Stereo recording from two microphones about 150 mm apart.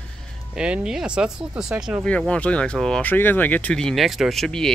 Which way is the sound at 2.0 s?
10° left (ahead or behind).